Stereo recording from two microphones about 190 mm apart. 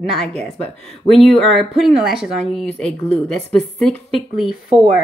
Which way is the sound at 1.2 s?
Centre (ahead or behind).